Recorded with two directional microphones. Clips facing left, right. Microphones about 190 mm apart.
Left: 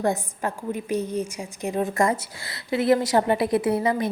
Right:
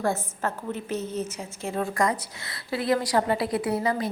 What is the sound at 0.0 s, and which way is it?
A woman's voice, 15° left (ahead or behind).